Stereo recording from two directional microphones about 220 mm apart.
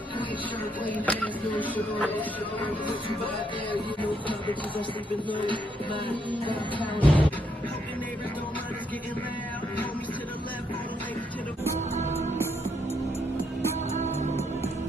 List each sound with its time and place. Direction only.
0.9 s speech: 5° left (ahead or behind)
5.4 s music: 20° right (ahead or behind)
6.4 s music: 20° left (ahead or behind)
7.0 s speech: 5° left (ahead or behind)
11.9 s music: 30° right (ahead or behind)
13.9 s music: 30° right (ahead or behind)